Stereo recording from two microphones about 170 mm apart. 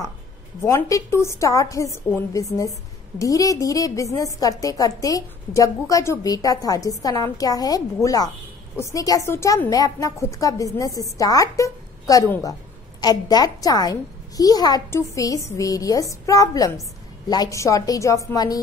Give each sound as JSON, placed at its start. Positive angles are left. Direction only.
{"t": 0.6, "sound": "a woman's voice", "side_deg": 15}